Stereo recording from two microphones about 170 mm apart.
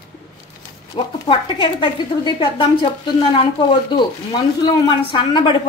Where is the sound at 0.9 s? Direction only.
35° left (ahead or behind).